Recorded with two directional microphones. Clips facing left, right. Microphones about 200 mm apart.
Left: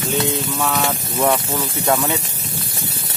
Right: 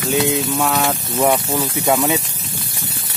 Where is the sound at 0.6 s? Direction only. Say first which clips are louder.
Right 2 dB; 5° right (ahead or behind).